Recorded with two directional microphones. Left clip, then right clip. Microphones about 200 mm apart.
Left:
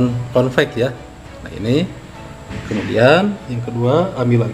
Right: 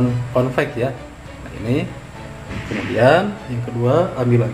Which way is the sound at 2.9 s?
45° left (ahead or behind).